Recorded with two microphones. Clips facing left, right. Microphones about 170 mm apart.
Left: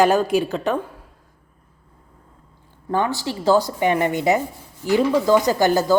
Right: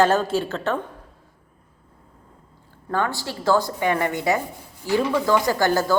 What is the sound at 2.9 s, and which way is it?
Speech, 15° left (ahead or behind).